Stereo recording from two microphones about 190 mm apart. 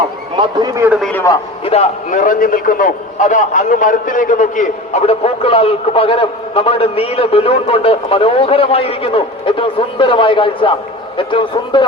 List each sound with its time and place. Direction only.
0.3 s a man's voice: 20° right (ahead or behind)
1.0 s a man's voice: 15° left (ahead or behind)
1.6 s a man's voice: 35° left (ahead or behind)